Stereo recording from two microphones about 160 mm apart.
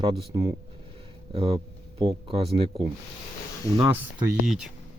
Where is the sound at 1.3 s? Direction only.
35° right (ahead or behind).